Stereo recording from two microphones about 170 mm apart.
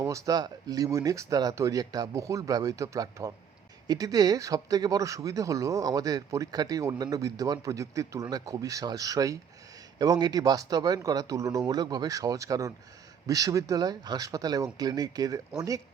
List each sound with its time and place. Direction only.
0.0 s speech: 20° right (ahead or behind)